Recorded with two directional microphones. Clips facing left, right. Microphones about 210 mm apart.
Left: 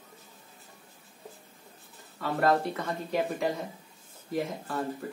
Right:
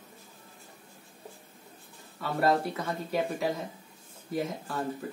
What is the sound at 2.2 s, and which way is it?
Speech, 5° right (ahead or behind).